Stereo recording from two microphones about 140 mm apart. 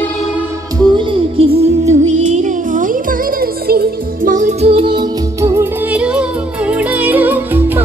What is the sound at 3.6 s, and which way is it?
Music, 90° right.